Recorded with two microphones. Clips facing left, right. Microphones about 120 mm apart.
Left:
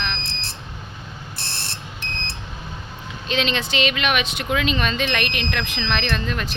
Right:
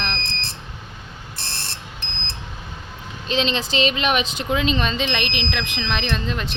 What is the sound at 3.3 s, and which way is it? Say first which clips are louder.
Speech: right 1 dB; 30° right (ahead or behind).